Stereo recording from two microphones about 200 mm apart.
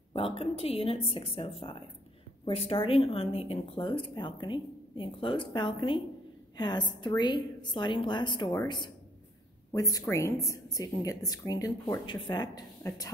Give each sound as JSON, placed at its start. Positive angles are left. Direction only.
{"t": 0.1, "sound": "a woman's voice", "side_deg": 30}